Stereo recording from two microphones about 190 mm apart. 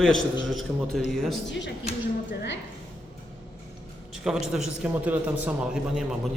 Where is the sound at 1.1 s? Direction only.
Centre (ahead or behind).